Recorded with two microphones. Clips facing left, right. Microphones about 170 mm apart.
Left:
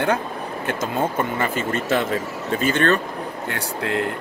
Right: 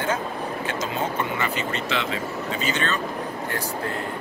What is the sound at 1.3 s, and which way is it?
Speech, 50° left (ahead or behind).